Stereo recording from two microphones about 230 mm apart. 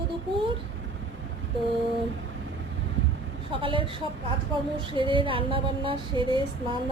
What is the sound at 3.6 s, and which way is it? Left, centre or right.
Speech, right.